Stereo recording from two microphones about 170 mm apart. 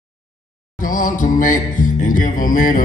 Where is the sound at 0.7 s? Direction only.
50° left (ahead or behind).